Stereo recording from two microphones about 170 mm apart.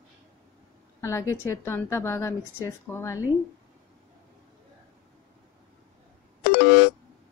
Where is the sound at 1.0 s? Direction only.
15° left (ahead or behind).